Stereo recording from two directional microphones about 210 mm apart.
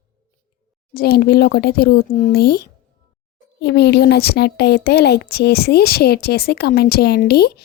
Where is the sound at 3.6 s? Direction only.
50° left (ahead or behind).